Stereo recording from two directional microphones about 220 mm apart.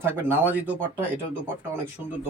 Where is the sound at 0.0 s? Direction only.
10° right (ahead or behind).